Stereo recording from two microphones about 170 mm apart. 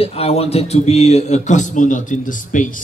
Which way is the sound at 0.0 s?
35° left (ahead or behind).